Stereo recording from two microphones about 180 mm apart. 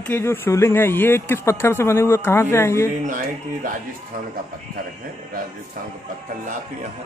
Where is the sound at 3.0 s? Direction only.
45° right (ahead or behind).